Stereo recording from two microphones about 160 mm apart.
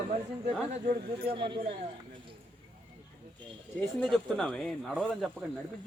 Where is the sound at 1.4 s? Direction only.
30° right (ahead or behind).